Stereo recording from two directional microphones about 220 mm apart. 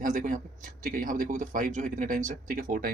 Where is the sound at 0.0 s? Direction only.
35° right (ahead or behind).